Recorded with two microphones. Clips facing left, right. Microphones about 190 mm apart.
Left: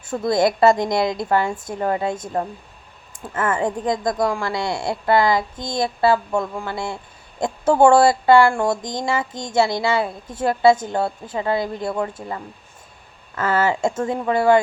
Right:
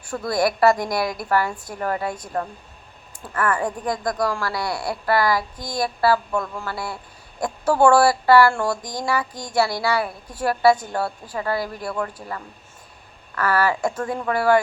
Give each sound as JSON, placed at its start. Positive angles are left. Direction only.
{"t": 0.0, "sound": "a woman's voice", "side_deg": 20}